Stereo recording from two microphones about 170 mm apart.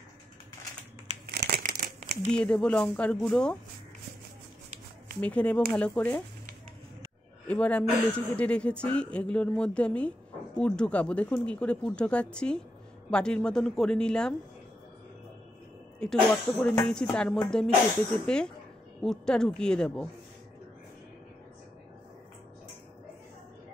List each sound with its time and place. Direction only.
1.3 s crumpling: 65° right (ahead or behind)
2.3 s speech: 5° left (ahead or behind)
5.2 s speech: 5° left (ahead or behind)
7.4 s speech: 5° left (ahead or behind)
16.0 s speech: 5° left (ahead or behind)